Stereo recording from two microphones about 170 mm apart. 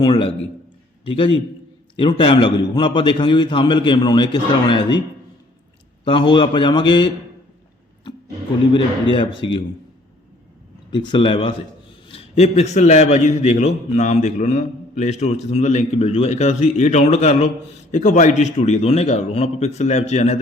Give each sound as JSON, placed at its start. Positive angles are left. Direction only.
{"t": 0.0, "sound": "a man's voice", "side_deg": 30}
{"t": 6.1, "sound": "a man's voice", "side_deg": 30}
{"t": 8.7, "sound": "a man's voice", "side_deg": 30}
{"t": 10.9, "sound": "a man's voice", "side_deg": 25}